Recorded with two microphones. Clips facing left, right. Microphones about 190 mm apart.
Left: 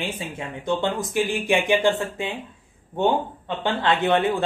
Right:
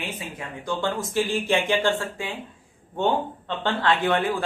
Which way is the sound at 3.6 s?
20° left (ahead or behind).